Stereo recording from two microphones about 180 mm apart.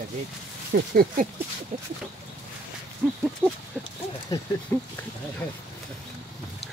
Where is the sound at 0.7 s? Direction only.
55° right (ahead or behind).